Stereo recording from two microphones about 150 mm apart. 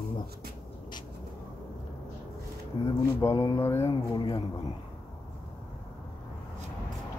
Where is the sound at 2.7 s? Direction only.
30° left (ahead or behind).